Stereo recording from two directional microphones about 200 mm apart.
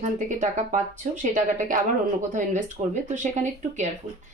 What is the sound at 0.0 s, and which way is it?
Speech, 40° right (ahead or behind).